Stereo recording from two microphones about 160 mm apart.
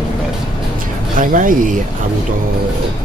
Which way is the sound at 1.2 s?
55° right (ahead or behind).